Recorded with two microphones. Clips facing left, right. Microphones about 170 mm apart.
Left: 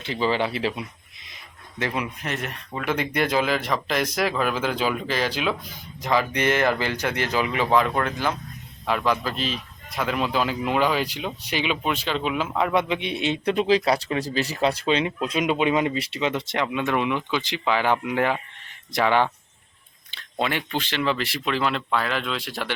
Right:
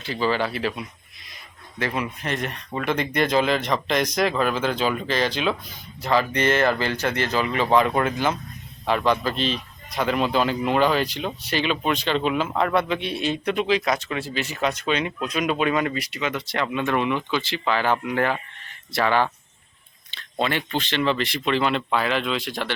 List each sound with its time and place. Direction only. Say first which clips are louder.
0.0 s speech: even; 25° left (ahead or behind)
2.0 s speech: right 2 dB; 5° left (ahead or behind)
12.7 s speech: even; 20° left (ahead or behind)
16.0 s speech: left 2 dB; 30° left (ahead or behind)
16.6 s speech: right 2 dB; 10° left (ahead or behind)
20.4 s speech: right 1 dB; 10° left (ahead or behind)